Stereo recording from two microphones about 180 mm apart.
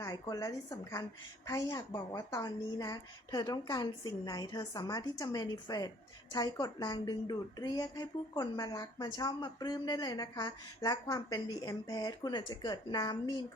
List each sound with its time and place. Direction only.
0.0 s a woman's voice: 20° left (ahead or behind)